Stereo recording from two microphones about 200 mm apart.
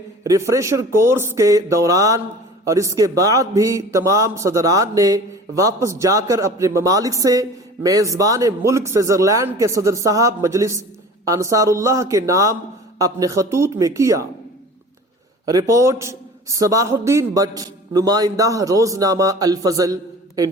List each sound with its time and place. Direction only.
0.3 s a man's voice: 15° right (ahead or behind)
15.4 s a man's voice: 15° right (ahead or behind)